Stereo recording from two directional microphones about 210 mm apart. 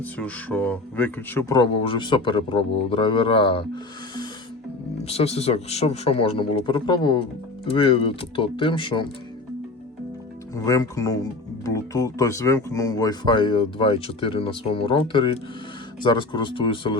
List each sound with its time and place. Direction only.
0.0 s speech: 5° left (ahead or behind); by 3.6 s 25° left (ahead or behind)
5.0 s speech: 30° left (ahead or behind)
10.5 s speech: 15° left (ahead or behind)